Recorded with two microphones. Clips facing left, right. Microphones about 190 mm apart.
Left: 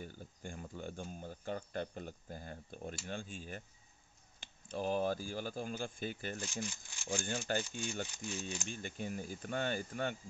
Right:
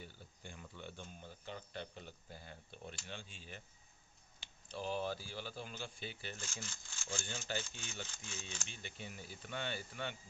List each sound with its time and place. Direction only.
0.0 s a sound: 45° left (ahead or behind)
3.1 s speech: 50° left (ahead or behind)
6.3 s speech: 15° left (ahead or behind)
7.2 s speech: 50° left (ahead or behind)
8.1 s speech: 15° left (ahead or behind)
8.6 s speech: 45° left (ahead or behind)